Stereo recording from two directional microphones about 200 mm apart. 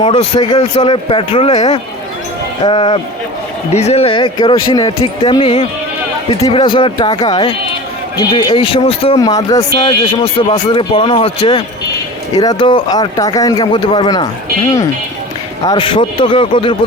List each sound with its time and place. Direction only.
0.0 s a man's voice: 30° left (ahead or behind)
0.3 s speech: 20° left (ahead or behind)
2.6 s speech: 25° left (ahead or behind)
15.6 s speech: 25° left (ahead or behind)